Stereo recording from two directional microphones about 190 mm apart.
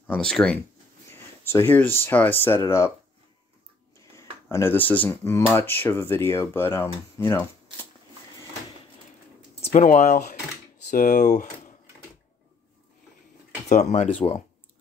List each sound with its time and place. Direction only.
0.0 s speech: 5° left (ahead or behind)
4.5 s speech: 15° left (ahead or behind)
9.6 s speech: 35° left (ahead or behind)
13.7 s speech: 40° left (ahead or behind)